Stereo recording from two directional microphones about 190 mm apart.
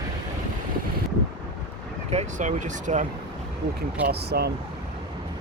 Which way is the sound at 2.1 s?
40° right (ahead or behind).